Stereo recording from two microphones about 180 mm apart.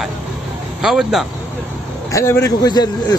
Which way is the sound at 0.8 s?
Centre (ahead or behind).